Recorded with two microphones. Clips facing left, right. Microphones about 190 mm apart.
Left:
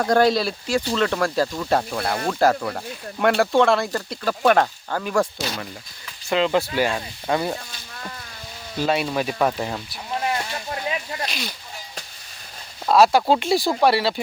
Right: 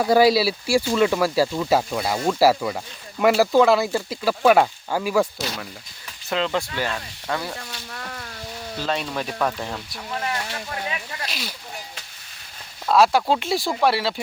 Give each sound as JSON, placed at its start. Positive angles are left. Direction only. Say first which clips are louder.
{"t": 0.0, "sound": "speech", "louder": "right 2 dB", "side_deg": -5}
{"t": 6.7, "sound": "speech", "louder": "left 5 dB", "side_deg": 15}
{"t": 7.7, "sound": "insect", "louder": "right 2 dB", "side_deg": -65}
{"t": 8.8, "sound": "speech", "louder": "left 5 dB", "side_deg": 10}
{"t": 11.3, "sound": "speech", "louder": "left 2 dB", "side_deg": -5}
{"t": 13.1, "sound": "speech", "louder": "left 3 dB", "side_deg": 0}